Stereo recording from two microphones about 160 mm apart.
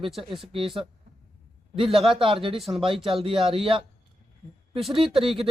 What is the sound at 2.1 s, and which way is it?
A woman's voice, 35° right (ahead or behind).